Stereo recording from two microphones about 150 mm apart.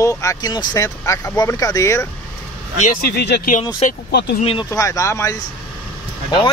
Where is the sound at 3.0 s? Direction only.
90° left.